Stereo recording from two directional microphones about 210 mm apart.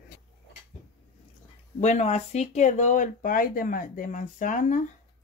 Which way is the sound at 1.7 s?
35° left (ahead or behind).